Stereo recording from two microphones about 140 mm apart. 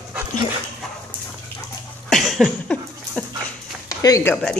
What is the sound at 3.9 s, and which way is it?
Speech, 25° left (ahead or behind).